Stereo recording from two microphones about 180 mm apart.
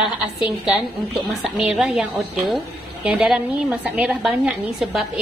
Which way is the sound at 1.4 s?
Centre (ahead or behind).